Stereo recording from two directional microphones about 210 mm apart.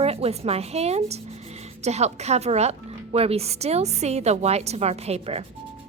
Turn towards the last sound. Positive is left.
turn(degrees=-30)  # may be behind; listen again after turning